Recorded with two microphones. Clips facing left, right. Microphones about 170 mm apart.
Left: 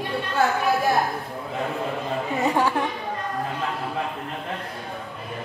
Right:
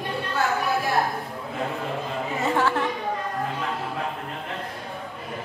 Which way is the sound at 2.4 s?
15° left (ahead or behind).